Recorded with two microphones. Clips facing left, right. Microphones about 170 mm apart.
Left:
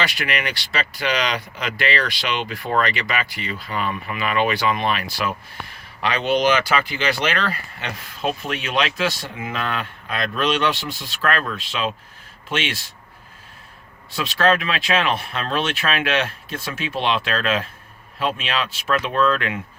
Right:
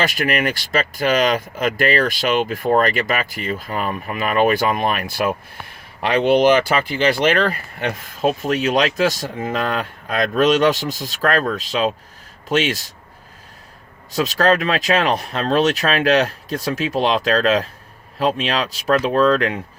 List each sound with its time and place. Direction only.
0.0 s speech: 45° right (ahead or behind)
14.1 s speech: 40° right (ahead or behind)